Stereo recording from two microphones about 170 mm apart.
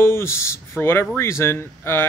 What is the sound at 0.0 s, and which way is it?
Speech, 15° left (ahead or behind).